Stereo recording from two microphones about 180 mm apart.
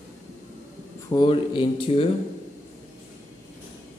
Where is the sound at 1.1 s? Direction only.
25° left (ahead or behind).